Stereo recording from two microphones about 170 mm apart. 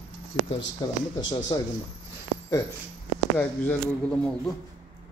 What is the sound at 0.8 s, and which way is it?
Speech, 25° left (ahead or behind).